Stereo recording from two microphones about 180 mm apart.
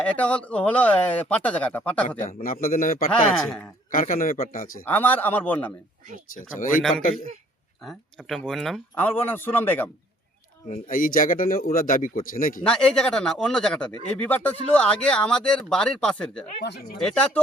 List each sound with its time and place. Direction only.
0.0 s speech: 5° left (ahead or behind)
2.0 s speech: 45° left (ahead or behind)
3.1 s speech: centre (ahead or behind)
3.9 s speech: 50° left (ahead or behind)
4.9 s speech: 10° left (ahead or behind)
7.9 s speech: centre (ahead or behind)
10.7 s speech: 50° left (ahead or behind)
12.6 s speech: 5° left (ahead or behind)
16.6 s speech: 70° left (ahead or behind)
17.0 s speech: 5° left (ahead or behind)